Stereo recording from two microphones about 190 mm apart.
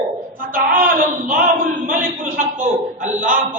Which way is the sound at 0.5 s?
45° right (ahead or behind).